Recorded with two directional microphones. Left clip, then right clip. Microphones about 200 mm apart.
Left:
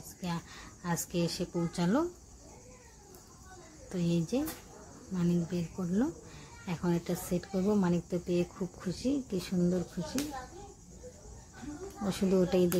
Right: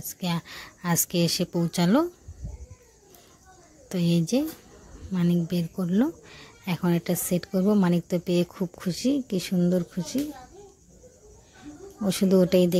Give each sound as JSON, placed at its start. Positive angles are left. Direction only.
{"t": 0.2, "sound": "speech", "side_deg": -45}
{"t": 3.9, "sound": "speech", "side_deg": -40}
{"t": 12.1, "sound": "speech", "side_deg": -40}